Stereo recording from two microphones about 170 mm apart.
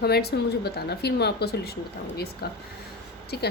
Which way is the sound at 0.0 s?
70° left (ahead or behind).